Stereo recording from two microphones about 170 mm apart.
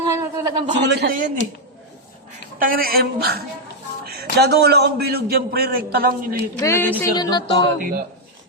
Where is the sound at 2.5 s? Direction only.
55° right (ahead or behind).